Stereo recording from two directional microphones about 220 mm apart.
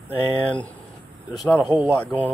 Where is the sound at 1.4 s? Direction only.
5° left (ahead or behind).